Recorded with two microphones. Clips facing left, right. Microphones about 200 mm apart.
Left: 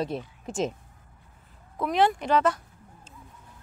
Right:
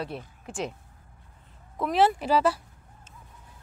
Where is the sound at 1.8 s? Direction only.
5° right (ahead or behind).